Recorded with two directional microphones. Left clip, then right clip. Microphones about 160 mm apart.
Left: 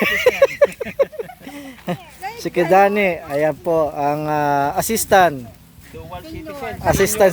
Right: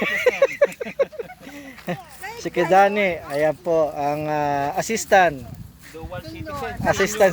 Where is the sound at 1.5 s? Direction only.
40° left (ahead or behind).